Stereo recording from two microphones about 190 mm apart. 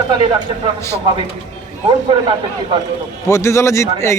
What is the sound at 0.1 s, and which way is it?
Speech, 25° right (ahead or behind).